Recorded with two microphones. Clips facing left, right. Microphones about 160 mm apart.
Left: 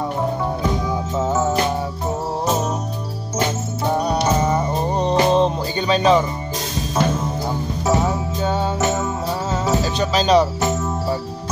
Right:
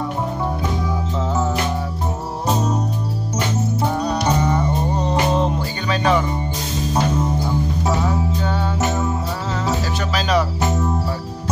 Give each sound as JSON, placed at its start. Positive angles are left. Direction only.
{"t": 4.0, "sound": "music", "side_deg": 30}
{"t": 7.9, "sound": "music", "side_deg": 25}